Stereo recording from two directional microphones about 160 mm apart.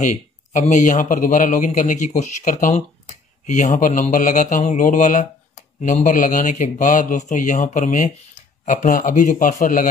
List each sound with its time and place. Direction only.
0.0 s speech: 50° left (ahead or behind)